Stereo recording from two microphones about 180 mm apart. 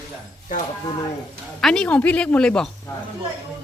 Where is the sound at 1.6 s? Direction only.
5° left (ahead or behind).